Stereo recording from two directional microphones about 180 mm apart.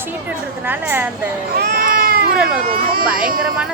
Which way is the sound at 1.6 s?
55° right (ahead or behind).